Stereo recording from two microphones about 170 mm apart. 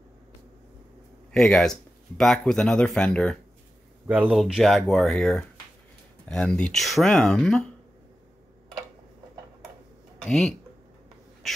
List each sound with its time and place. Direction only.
1.3 s speech: 5° left (ahead or behind)
10.2 s speech: 5° left (ahead or behind)